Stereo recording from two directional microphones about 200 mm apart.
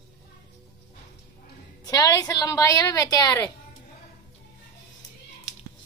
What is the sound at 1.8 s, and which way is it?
A woman's voice, 20° left (ahead or behind).